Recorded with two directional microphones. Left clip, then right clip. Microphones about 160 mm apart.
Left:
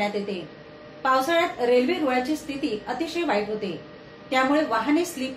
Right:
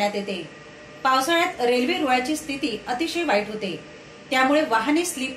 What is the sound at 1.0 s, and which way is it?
A woman's voice, 30° right (ahead or behind).